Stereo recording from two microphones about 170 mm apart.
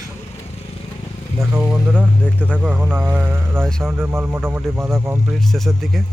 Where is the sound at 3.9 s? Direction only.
15° right (ahead or behind).